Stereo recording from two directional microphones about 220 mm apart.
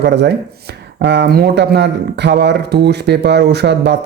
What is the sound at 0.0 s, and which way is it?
Speech, 50° right (ahead or behind).